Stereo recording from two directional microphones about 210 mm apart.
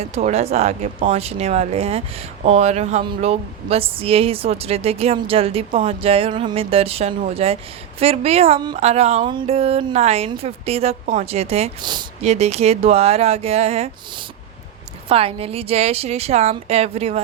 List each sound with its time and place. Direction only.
0.1 s speech: 30° right (ahead or behind)
15.1 s speech: 25° right (ahead or behind)